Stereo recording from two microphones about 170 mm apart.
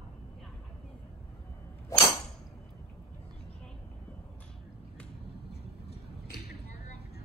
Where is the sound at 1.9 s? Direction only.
20° left (ahead or behind).